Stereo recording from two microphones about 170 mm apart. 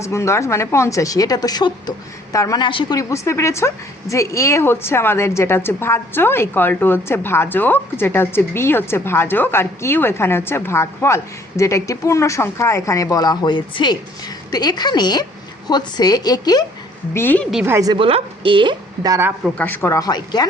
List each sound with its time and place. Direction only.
0.0 s a woman's voice: 15° left (ahead or behind)
17.2 s a woman's voice: 10° left (ahead or behind)
17.5 s a woman's voice: 5° right (ahead or behind)
17.7 s a woman's voice: 25° right (ahead or behind)
19.5 s a woman's voice: 10° left (ahead or behind)